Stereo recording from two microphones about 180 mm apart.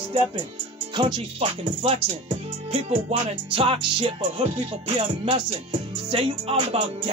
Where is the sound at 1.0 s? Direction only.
30° right (ahead or behind).